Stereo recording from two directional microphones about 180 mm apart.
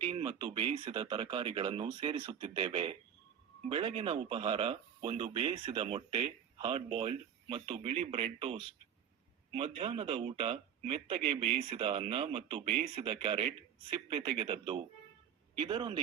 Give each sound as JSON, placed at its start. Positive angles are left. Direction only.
{"t": 0.0, "sound": "speech", "side_deg": -30}